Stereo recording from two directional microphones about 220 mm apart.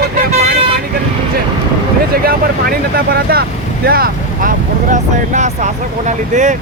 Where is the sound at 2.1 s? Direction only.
45° right (ahead or behind).